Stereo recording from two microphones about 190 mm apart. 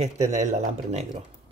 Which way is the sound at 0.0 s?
40° right (ahead or behind).